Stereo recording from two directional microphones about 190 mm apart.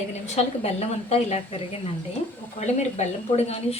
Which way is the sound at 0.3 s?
35° left (ahead or behind).